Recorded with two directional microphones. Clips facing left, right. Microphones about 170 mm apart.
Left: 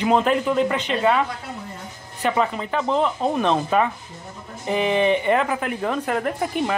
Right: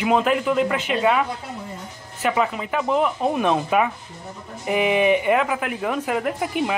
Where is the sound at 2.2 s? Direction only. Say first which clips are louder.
Even; 5° right (ahead or behind).